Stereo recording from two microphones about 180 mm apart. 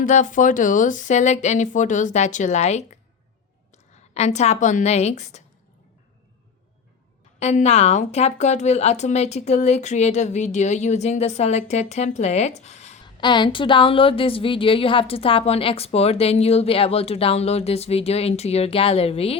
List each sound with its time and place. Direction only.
0.0 s speech: 45° left (ahead or behind)
4.1 s a woman's voice: 40° left (ahead or behind)
7.3 s a woman's voice: 40° left (ahead or behind)
13.1 s a woman's voice: 25° left (ahead or behind)